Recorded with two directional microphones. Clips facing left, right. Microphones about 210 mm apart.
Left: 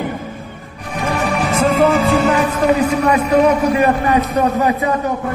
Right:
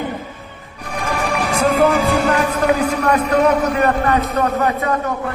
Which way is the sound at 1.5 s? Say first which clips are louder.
Left 1 dB; centre (ahead or behind).